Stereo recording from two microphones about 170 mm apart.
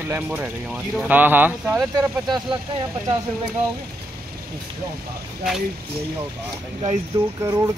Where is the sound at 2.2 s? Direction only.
25° right (ahead or behind).